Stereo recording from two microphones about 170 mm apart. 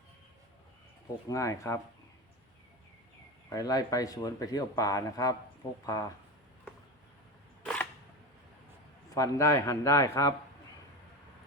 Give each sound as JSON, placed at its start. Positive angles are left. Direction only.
{"t": 1.3, "sound": "speech", "side_deg": 20}
{"t": 3.5, "sound": "speech", "side_deg": 20}
{"t": 7.6, "sound": "a sound", "side_deg": 5}
{"t": 9.0, "sound": "speech", "side_deg": 20}